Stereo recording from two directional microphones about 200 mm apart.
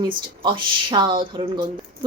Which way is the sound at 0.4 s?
25° right (ahead or behind).